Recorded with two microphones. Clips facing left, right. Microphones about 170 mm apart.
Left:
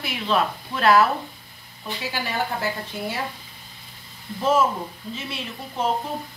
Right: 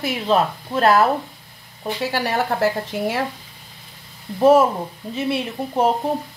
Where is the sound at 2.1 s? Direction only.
75° right (ahead or behind).